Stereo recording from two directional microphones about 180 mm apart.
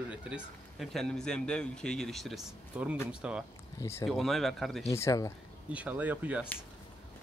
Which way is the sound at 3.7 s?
15° left (ahead or behind).